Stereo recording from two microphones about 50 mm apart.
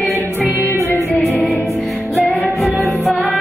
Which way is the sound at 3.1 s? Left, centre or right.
Left.